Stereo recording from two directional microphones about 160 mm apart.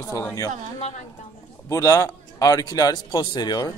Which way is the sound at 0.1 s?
20° left (ahead or behind).